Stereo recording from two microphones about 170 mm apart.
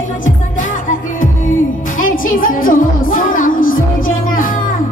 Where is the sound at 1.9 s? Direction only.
50° left (ahead or behind).